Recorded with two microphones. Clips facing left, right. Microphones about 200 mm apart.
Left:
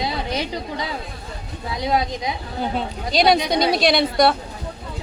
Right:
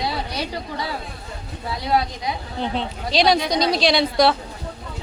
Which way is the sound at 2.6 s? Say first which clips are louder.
Left 1 dB; 5° left (ahead or behind).